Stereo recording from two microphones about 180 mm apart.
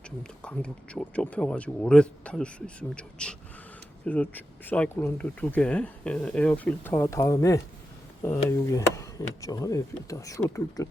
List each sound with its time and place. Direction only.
0.2 s speech: 5° left (ahead or behind)